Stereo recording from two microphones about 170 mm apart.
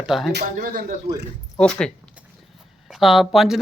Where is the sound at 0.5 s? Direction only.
55° right (ahead or behind).